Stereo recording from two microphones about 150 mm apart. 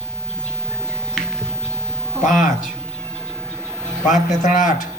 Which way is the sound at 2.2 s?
60° left (ahead or behind).